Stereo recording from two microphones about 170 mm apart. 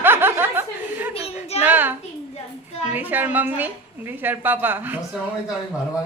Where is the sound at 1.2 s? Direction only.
40° left (ahead or behind).